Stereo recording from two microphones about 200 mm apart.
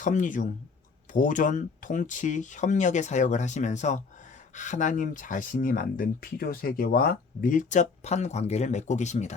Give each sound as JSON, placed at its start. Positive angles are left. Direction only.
{"t": 0.0, "sound": "speech", "side_deg": 40}